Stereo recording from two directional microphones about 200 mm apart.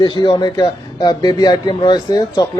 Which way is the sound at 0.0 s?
20° left (ahead or behind).